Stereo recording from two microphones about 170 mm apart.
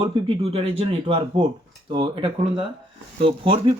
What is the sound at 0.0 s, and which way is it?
Speech, 35° right (ahead or behind).